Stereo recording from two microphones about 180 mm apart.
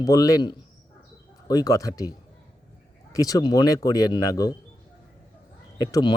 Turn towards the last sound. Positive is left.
turn(degrees=20)  # may be behind; listen again after turning